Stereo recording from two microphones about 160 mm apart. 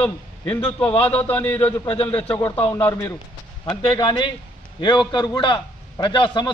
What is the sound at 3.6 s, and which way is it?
A man's voice, 30° left (ahead or behind).